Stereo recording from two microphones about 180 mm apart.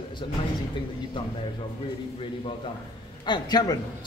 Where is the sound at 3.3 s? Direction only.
25° left (ahead or behind).